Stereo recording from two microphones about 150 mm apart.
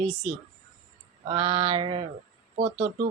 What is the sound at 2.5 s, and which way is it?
Speech, 65° right (ahead or behind).